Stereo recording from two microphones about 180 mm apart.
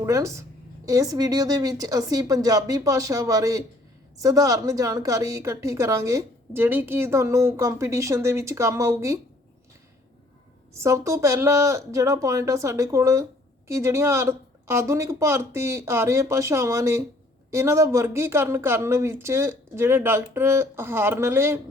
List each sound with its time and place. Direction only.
0.0 s a woman's voice: 15° right (ahead or behind)
10.8 s a woman's voice: 15° right (ahead or behind)